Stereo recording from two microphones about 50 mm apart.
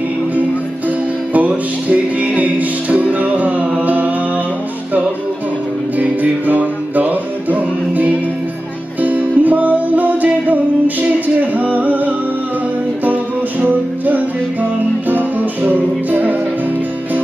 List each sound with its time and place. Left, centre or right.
0.8 s music: right
5.9 s music: right